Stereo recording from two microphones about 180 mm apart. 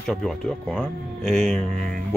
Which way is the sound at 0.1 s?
5° left (ahead or behind).